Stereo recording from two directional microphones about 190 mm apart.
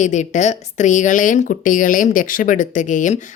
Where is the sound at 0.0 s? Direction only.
40° left (ahead or behind).